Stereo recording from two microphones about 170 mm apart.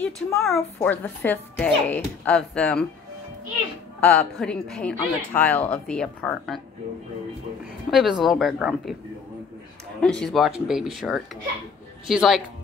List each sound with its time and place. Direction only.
0.0 s speech: centre (ahead or behind)
0.7 s speech: 10° left (ahead or behind)
4.0 s speech: 15° left (ahead or behind)
4.4 s speech: centre (ahead or behind)
7.9 s speech: centre (ahead or behind)
10.0 s speech: 5° left (ahead or behind)